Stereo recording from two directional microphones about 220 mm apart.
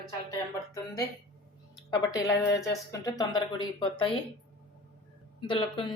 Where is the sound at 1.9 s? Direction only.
15° left (ahead or behind).